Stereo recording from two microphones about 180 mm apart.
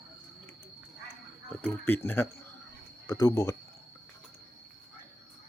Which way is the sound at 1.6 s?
10° left (ahead or behind).